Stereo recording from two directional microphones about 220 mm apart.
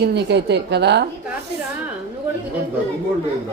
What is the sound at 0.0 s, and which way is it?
Speech, 50° right (ahead or behind).